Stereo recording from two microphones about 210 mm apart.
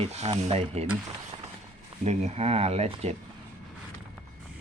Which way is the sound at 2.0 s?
30° right (ahead or behind).